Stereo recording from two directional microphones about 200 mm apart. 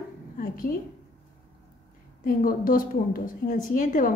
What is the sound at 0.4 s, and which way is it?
Speech, 45° left (ahead or behind).